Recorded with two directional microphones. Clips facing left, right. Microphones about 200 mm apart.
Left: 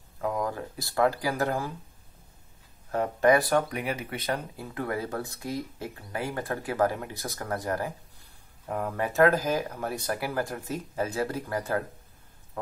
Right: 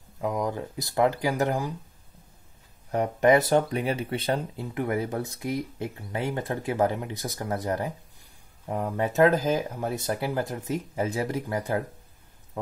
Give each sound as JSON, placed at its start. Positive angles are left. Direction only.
{"t": 0.2, "sound": "speech", "side_deg": -20}
{"t": 2.9, "sound": "speech", "side_deg": -20}